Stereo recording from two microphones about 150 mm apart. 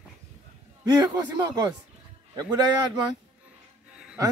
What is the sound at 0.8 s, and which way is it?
Speech, 30° right (ahead or behind).